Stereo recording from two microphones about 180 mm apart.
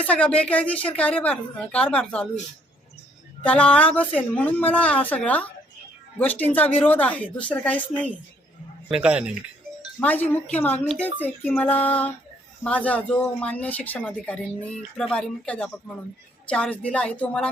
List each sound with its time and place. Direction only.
0.0 s speech: 5° left (ahead or behind)
3.4 s speech: 5° left (ahead or behind)
8.9 s speech: 5° right (ahead or behind)
10.0 s speech: 10° left (ahead or behind)